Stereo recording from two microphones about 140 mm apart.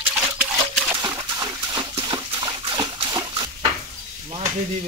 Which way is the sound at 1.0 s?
25° right (ahead or behind).